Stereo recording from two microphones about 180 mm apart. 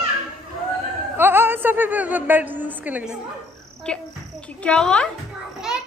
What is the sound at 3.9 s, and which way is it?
A child's voice, 5° left (ahead or behind).